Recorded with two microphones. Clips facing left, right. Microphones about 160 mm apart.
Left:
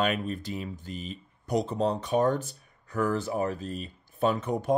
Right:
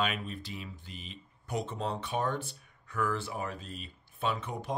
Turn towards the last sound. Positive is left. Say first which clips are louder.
# left 8 dB
turn(degrees=45)  # may be behind; listen again after turning